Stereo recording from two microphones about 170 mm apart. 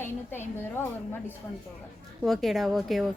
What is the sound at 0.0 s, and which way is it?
Speech, 15° left (ahead or behind).